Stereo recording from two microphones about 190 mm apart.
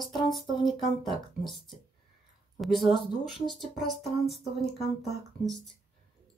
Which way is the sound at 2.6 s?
Centre (ahead or behind).